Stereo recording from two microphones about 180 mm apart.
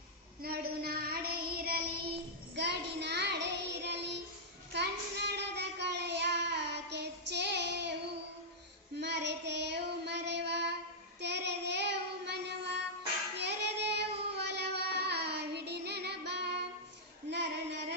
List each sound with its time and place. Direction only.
0.4 s child singing: 55° right (ahead or behind)
2.6 s child singing: 70° right (ahead or behind)
9.0 s child singing: 75° right (ahead or behind)
17.3 s female singing: 75° right (ahead or behind)